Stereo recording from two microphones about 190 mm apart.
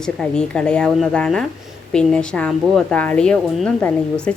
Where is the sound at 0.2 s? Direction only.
5° left (ahead or behind).